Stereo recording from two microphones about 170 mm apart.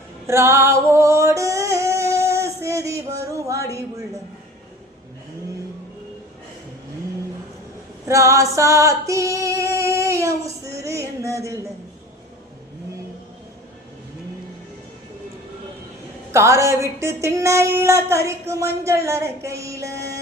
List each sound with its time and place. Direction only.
0.3 s music: 15° right (ahead or behind)
8.0 s female singing: 20° right (ahead or behind)
16.3 s speech: 15° right (ahead or behind)